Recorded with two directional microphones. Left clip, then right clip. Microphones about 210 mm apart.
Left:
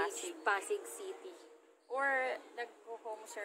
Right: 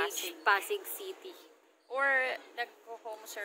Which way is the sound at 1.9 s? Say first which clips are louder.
Right 5 dB; 15° left (ahead or behind).